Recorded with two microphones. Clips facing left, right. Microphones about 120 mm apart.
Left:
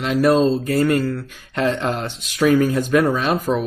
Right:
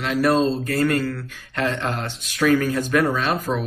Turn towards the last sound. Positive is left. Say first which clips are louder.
# left 3 dB
turn(degrees=15)  # may be behind; listen again after turning